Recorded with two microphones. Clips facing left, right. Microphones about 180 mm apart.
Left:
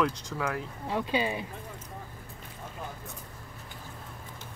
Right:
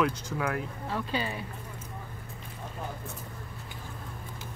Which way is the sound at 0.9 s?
15° left (ahead or behind).